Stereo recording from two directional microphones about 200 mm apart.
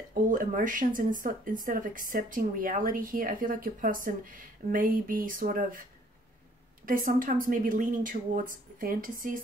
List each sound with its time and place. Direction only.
0.1 s speech: 40° right (ahead or behind)
6.9 s speech: 40° right (ahead or behind)